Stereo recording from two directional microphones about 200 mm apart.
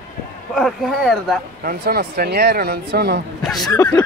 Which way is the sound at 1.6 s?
45° right (ahead or behind).